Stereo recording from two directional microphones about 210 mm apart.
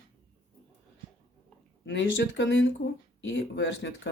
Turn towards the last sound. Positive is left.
turn(degrees=60)  # may be behind; listen again after turning